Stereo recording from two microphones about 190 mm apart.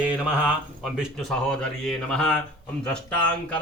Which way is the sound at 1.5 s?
5° left (ahead or behind).